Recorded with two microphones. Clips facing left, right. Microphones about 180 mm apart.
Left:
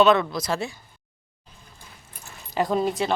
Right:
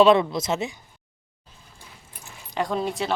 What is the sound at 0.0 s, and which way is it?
Speech, 25° right (ahead or behind).